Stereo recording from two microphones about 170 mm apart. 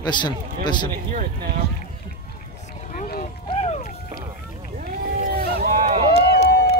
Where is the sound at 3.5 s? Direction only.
35° left (ahead or behind).